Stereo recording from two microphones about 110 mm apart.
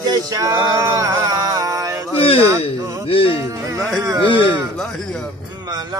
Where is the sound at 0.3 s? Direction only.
35° right (ahead or behind).